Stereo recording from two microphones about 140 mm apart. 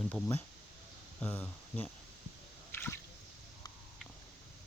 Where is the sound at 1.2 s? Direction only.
10° left (ahead or behind).